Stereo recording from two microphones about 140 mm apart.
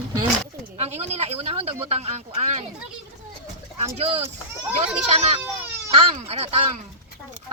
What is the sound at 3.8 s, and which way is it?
Speech, 45° right (ahead or behind).